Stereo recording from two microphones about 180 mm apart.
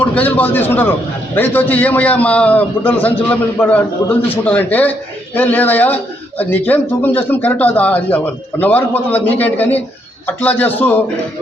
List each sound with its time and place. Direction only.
0.0 s a man's voice: 10° left (ahead or behind)